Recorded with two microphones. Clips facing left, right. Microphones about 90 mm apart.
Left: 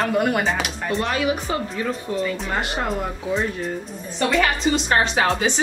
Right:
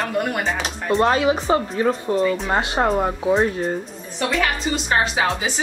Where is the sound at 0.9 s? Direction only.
35° right (ahead or behind).